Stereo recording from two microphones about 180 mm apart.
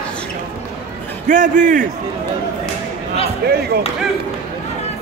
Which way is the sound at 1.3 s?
45° right (ahead or behind).